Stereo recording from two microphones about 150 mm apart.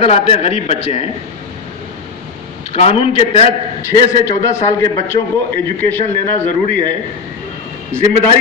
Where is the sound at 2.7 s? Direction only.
45° left (ahead or behind).